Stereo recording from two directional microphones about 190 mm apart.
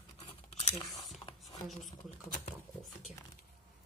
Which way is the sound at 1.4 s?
Centre (ahead or behind).